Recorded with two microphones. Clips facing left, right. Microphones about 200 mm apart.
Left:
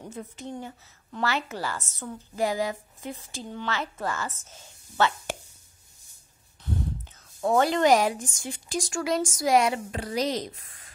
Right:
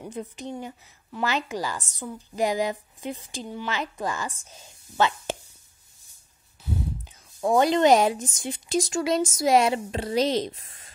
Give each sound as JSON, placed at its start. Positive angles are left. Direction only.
{"t": 0.0, "sound": "a woman's voice", "side_deg": -15}
{"t": 6.6, "sound": "speech", "side_deg": -10}